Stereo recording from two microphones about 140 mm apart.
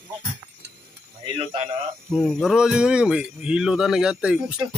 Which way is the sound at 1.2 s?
50° right (ahead or behind).